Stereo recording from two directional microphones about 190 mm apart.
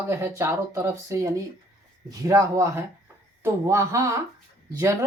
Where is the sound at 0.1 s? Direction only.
15° right (ahead or behind).